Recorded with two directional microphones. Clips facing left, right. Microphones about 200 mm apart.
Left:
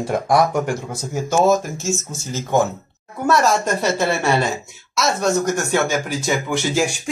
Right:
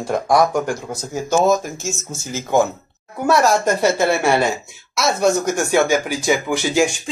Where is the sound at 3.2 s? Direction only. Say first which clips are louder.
Right 2 dB; 5° right (ahead or behind).